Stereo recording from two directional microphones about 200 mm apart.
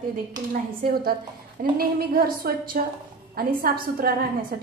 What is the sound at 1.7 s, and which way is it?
A woman's voice, 45° right (ahead or behind).